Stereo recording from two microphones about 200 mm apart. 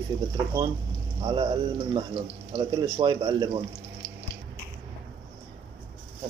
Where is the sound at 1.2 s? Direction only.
25° right (ahead or behind).